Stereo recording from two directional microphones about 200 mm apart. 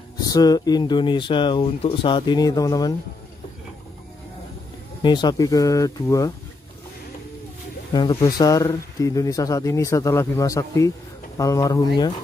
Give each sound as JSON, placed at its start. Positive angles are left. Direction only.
{"t": 0.2, "sound": "speech", "side_deg": 20}
{"t": 5.0, "sound": "speech", "side_deg": 20}
{"t": 7.9, "sound": "speech", "side_deg": 25}